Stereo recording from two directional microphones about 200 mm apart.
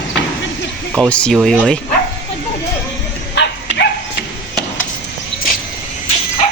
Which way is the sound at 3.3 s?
65° left (ahead or behind).